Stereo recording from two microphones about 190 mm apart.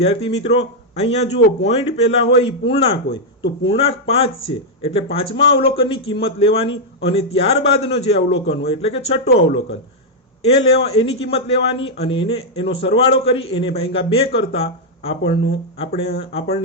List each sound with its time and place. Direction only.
0.0 s speech: 30° left (ahead or behind)
10.4 s speech: 35° left (ahead or behind)